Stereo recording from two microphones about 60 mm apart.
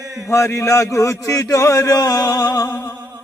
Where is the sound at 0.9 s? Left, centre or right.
Left.